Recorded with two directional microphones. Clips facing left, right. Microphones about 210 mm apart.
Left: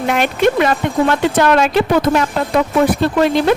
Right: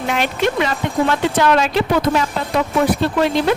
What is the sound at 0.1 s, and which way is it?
Speech, 55° left (ahead or behind).